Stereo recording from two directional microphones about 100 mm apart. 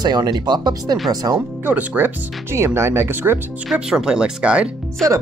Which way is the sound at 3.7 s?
5° right (ahead or behind).